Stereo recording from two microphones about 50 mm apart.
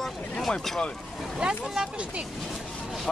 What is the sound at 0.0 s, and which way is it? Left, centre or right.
Boat, centre.